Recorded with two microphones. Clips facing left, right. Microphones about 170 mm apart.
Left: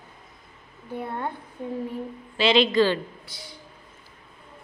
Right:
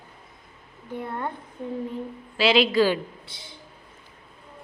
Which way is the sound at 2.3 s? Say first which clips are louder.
Even; 5° right (ahead or behind).